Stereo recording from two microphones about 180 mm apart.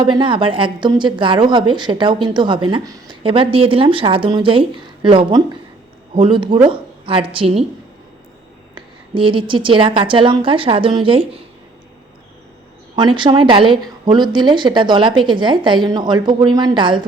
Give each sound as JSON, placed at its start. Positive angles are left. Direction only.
{"t": 0.0, "sound": "a woman's voice", "side_deg": -25}
{"t": 8.7, "sound": "a woman's voice", "side_deg": -30}
{"t": 13.0, "sound": "a woman's voice", "side_deg": -25}